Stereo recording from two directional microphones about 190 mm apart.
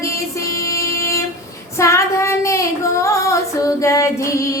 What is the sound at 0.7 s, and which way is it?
Vehicle, 15° left (ahead or behind).